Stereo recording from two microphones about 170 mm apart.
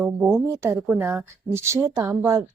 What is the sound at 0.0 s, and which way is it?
A woman's voice, 10° right (ahead or behind).